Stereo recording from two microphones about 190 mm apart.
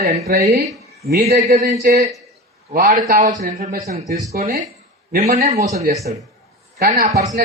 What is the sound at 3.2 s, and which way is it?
A man's voice, 40° right (ahead or behind).